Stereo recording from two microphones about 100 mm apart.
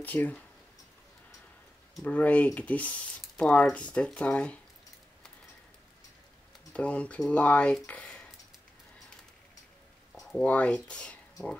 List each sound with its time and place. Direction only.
0.0 s speech: 15° left (ahead or behind)
2.0 s speech: 15° left (ahead or behind)
6.7 s speech: 10° left (ahead or behind)
10.3 s speech: 15° left (ahead or behind)